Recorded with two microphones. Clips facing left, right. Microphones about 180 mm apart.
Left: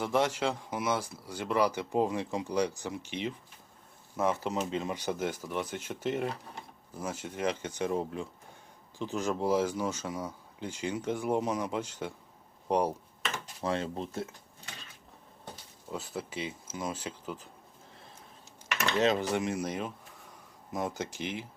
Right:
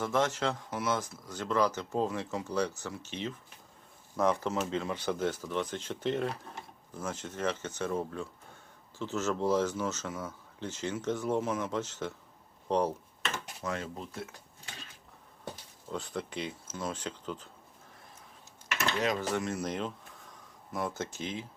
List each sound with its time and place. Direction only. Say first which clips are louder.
0.0 s speech: left 1 dB; 10° left (ahead or behind)
4.7 s speech: even; 15° left (ahead or behind)
13.6 s speech: left 7 dB; 30° left (ahead or behind)
15.9 s speech: right 1 dB; 5° left (ahead or behind)
18.9 s speech: left 5 dB; 25° left (ahead or behind)